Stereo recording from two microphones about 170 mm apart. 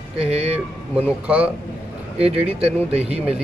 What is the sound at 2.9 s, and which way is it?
Speech, 35° right (ahead or behind).